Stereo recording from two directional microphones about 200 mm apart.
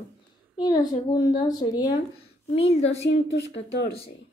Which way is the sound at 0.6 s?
20° left (ahead or behind).